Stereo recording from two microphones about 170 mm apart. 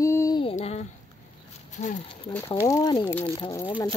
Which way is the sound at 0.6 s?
40° left (ahead or behind).